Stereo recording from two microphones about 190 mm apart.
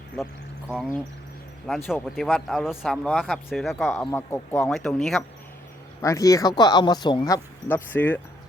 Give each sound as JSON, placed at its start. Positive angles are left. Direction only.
{"t": 1.6, "sound": "speech", "side_deg": 0}
{"t": 6.0, "sound": "speech", "side_deg": 15}